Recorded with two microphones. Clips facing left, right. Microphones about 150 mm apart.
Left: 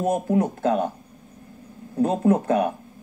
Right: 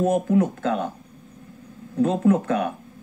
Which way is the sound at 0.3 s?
30° left (ahead or behind).